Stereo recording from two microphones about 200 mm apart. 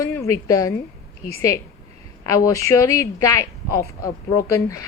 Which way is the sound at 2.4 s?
15° left (ahead or behind).